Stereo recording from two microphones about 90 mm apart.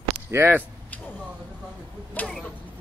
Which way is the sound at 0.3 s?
25° right (ahead or behind).